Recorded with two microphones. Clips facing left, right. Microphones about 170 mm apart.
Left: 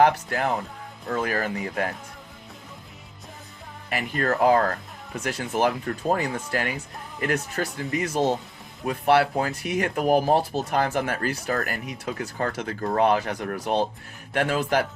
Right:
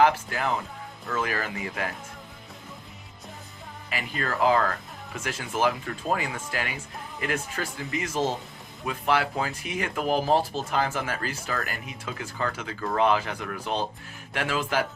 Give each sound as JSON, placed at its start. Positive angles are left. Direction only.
{"t": 0.0, "sound": "speech", "side_deg": 40}
{"t": 3.8, "sound": "speech", "side_deg": 50}
{"t": 8.1, "sound": "speech", "side_deg": 15}
{"t": 9.1, "sound": "speech", "side_deg": 45}